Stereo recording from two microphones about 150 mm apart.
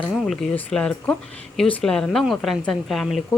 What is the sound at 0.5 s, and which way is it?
A woman's voice, 5° left (ahead or behind).